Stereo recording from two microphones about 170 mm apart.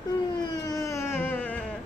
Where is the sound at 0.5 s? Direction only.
20° left (ahead or behind).